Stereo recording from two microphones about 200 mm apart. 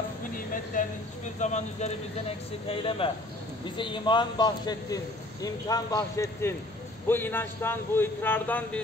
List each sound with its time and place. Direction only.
0.5 s a man's voice: 40° left (ahead or behind); by 8.8 s 10° left (ahead or behind)